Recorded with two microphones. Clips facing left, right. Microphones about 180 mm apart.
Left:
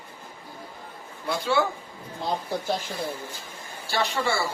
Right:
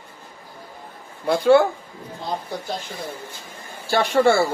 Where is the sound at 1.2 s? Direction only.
55° right (ahead or behind).